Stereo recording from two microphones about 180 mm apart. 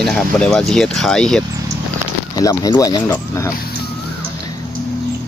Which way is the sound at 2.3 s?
20° left (ahead or behind).